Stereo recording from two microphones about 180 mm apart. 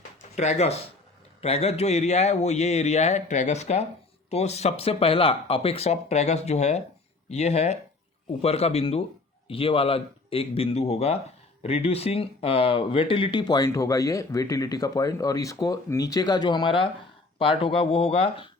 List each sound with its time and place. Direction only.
0.2 s speech: 40° left (ahead or behind)